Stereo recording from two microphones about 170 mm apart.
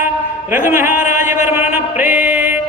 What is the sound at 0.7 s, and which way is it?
Speech, 15° right (ahead or behind).